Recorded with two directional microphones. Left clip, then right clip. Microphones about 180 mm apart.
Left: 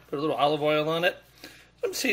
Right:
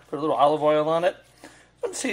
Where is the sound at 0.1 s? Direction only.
10° left (ahead or behind).